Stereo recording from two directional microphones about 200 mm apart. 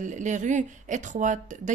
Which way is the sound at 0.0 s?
40° right (ahead or behind).